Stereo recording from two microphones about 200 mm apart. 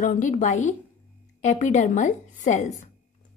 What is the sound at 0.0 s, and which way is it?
Speech, 40° left (ahead or behind).